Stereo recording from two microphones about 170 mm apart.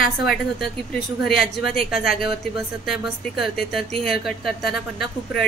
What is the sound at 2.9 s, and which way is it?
Speech, centre (ahead or behind).